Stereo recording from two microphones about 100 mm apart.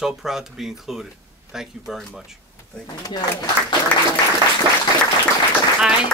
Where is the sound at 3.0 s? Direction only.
45° left (ahead or behind).